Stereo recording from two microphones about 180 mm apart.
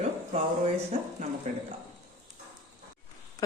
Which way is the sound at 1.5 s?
40° right (ahead or behind).